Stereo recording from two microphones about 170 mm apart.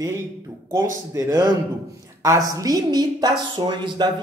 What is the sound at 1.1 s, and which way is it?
A woman's voice, 15° right (ahead or behind).